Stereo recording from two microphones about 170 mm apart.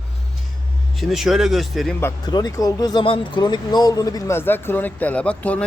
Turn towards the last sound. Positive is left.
turn(degrees=5)  # may be behind; listen again after turning